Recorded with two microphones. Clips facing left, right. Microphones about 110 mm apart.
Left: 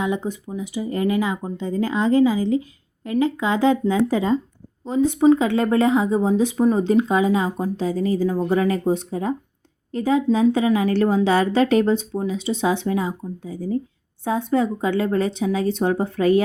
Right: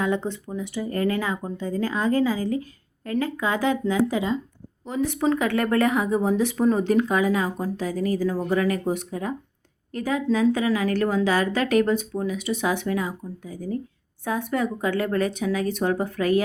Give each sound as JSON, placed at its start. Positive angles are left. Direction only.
{"t": 0.0, "sound": "speech", "side_deg": 15}